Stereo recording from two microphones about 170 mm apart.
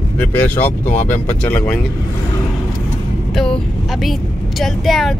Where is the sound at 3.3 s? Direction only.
5° left (ahead or behind).